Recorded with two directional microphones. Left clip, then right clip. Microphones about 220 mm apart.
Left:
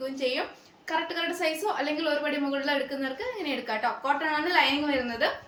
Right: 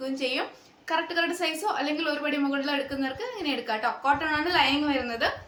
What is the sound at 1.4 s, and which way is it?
A woman's voice, 15° right (ahead or behind).